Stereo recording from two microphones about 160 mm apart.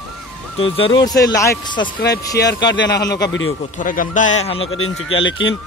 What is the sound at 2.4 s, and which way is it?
Speech, 80° left.